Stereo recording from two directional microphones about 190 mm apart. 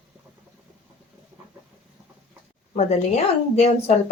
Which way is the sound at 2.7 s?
35° left (ahead or behind).